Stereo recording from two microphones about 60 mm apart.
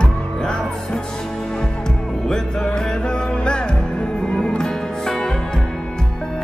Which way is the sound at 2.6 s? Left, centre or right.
Centre.